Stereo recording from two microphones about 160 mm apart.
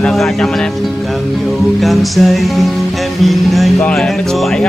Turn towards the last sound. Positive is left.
turn(degrees=0)  # may be behind; listen again after turning